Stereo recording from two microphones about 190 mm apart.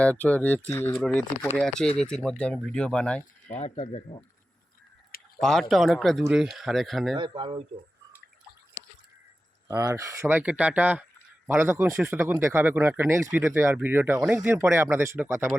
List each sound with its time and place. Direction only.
0.0 s speech: 5° left (ahead or behind)
1.5 s speech: 5° left (ahead or behind)
3.4 s speech: 35° left (ahead or behind)
5.4 s speech: centre (ahead or behind)
7.2 s speech: 25° right (ahead or behind)
9.6 s speech: 15° right (ahead or behind)